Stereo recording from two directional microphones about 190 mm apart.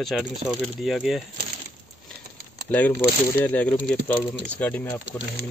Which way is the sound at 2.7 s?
10° left (ahead or behind).